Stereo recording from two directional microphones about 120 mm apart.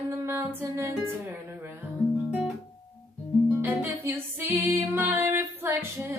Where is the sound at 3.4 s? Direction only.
15° right (ahead or behind).